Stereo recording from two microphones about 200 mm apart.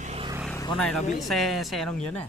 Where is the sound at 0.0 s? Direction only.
30° right (ahead or behind).